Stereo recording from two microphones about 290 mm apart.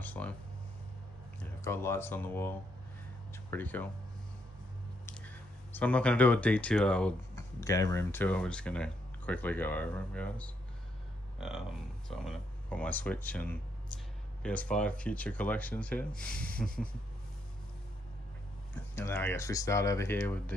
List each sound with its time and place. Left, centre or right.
0.0 s a sound: centre
1.4 s speech: centre
5.0 s speech: centre
18.9 s speech: centre